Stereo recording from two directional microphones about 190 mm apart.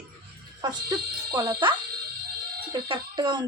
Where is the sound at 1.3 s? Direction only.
20° right (ahead or behind).